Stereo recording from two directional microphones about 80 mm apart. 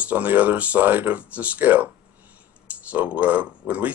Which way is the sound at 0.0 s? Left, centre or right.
Right.